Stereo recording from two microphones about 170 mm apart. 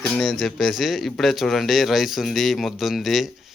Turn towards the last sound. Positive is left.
turn(degrees=0)  # may be behind; listen again after turning